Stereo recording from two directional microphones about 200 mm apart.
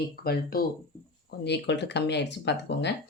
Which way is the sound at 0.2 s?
50° left (ahead or behind).